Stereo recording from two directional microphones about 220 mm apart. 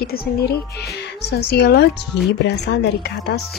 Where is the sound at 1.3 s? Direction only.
45° left (ahead or behind).